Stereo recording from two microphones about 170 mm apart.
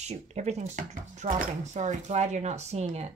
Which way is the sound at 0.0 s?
40° right (ahead or behind).